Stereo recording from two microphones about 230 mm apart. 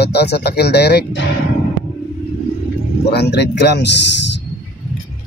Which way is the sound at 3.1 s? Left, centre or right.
Left.